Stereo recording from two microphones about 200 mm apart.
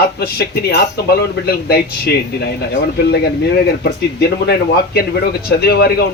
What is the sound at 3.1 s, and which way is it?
Speech, 50° left (ahead or behind).